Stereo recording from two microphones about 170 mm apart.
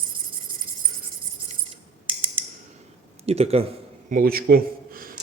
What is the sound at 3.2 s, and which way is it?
Speech, 35° right (ahead or behind).